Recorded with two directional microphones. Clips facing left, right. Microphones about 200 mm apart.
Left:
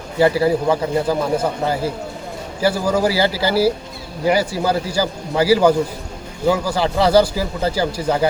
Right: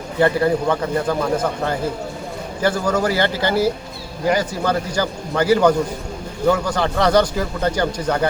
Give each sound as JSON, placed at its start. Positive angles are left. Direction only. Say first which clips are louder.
{"t": 0.2, "sound": "a man's voice", "louder": "left 1 dB", "side_deg": 5}